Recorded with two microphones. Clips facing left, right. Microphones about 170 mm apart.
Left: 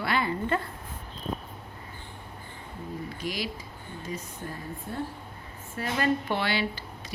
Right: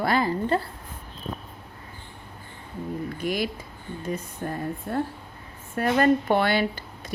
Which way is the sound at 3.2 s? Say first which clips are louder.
Right 7 dB; 55° right (ahead or behind).